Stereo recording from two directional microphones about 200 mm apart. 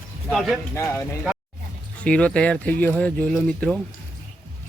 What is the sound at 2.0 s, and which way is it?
Speech, 5° left (ahead or behind).